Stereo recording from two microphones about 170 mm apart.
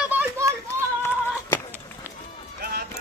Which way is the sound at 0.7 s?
15° left (ahead or behind).